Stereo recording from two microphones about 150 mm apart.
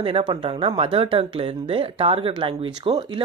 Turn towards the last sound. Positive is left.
turn(degrees=-35)  # may be behind; listen again after turning